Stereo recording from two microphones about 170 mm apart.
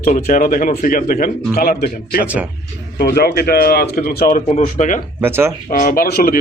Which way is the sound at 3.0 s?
65° left (ahead or behind).